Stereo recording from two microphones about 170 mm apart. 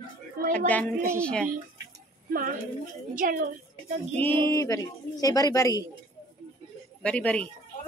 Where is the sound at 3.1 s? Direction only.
50° right (ahead or behind).